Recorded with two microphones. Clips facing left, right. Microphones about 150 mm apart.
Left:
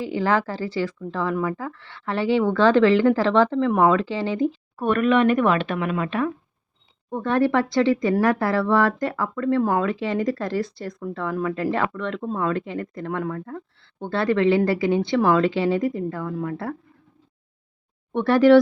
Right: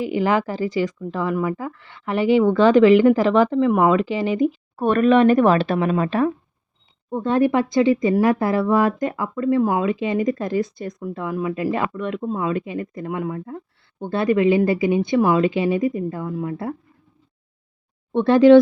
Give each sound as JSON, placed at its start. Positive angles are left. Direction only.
{"t": 0.0, "sound": "speech", "side_deg": -15}
{"t": 4.8, "sound": "speech", "side_deg": -35}
{"t": 7.1, "sound": "speech", "side_deg": -20}
{"t": 18.1, "sound": "speech", "side_deg": -20}